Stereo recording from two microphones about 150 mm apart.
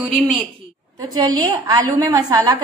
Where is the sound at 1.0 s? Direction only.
25° right (ahead or behind).